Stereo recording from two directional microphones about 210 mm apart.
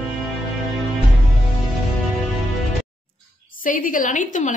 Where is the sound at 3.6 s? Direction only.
40° left (ahead or behind).